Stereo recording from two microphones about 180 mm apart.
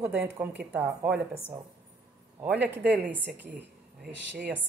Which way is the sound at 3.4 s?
10° right (ahead or behind).